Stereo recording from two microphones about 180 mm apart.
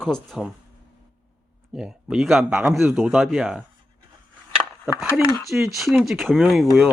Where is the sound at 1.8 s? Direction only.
5° right (ahead or behind).